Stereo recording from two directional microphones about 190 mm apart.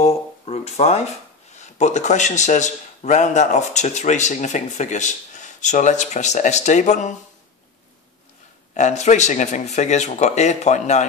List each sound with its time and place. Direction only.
0.0 s a sound: 35° left (ahead or behind)
1.6 s a man's voice: 40° left (ahead or behind)
8.7 s a man's voice: 40° left (ahead or behind)